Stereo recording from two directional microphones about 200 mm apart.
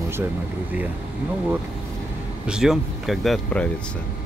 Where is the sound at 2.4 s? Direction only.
5° right (ahead or behind).